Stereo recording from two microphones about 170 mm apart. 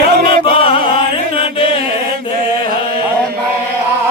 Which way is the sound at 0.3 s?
30° left (ahead or behind).